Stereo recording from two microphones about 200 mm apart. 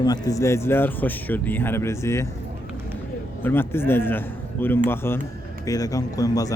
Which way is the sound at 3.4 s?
10° left (ahead or behind).